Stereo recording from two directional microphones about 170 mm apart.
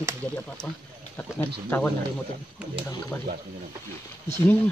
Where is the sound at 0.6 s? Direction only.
5° left (ahead or behind).